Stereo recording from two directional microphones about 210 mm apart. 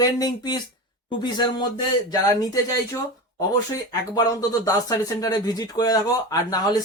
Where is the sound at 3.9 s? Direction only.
20° left (ahead or behind).